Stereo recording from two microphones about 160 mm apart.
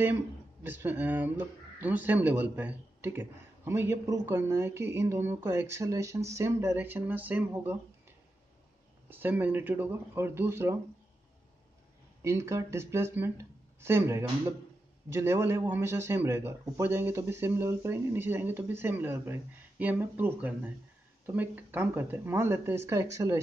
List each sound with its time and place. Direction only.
0.7 s speech: 10° right (ahead or behind)
9.1 s speech: 10° right (ahead or behind)
12.2 s speech: 20° right (ahead or behind)